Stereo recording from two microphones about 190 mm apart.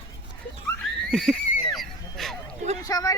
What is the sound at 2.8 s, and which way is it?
Vehicle, 20° left (ahead or behind).